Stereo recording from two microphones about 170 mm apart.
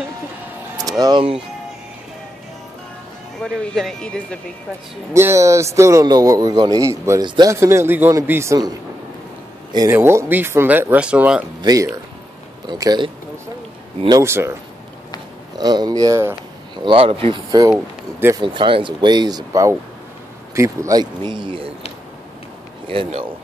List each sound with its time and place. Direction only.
0.7 s speech: 20° right (ahead or behind)
3.4 s speech: 5° left (ahead or behind)
5.1 s a man's voice: 15° right (ahead or behind)
11.6 s a man's voice: 20° right (ahead or behind)
16.7 s speech: 30° right (ahead or behind)
22.8 s a man's voice: 30° right (ahead or behind)